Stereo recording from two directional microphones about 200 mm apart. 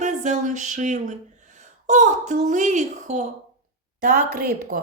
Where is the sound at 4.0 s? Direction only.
50° right (ahead or behind).